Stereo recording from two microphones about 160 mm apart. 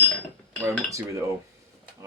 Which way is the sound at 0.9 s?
20° right (ahead or behind).